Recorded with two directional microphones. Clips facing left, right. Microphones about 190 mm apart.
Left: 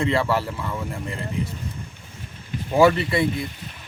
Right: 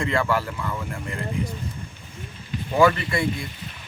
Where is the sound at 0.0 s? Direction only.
30° left (ahead or behind).